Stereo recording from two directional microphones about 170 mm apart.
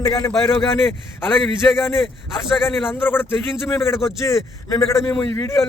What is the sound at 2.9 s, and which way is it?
A man's voice, 15° left (ahead or behind).